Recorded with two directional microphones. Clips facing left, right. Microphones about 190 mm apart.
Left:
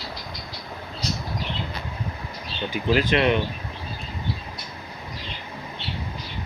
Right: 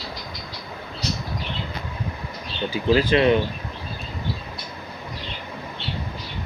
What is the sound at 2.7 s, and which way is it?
Speech, 35° right (ahead or behind).